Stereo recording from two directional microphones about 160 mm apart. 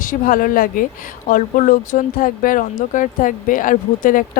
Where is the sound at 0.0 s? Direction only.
60° left (ahead or behind).